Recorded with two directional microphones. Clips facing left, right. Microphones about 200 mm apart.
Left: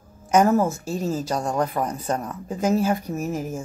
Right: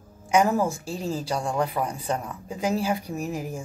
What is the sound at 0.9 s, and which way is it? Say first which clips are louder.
Speech: left 3 dB; 45° left (ahead or behind).